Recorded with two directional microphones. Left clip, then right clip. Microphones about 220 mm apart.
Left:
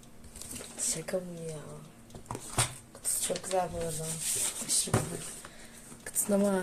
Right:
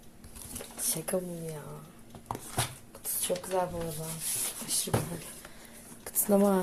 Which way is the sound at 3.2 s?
15° right (ahead or behind).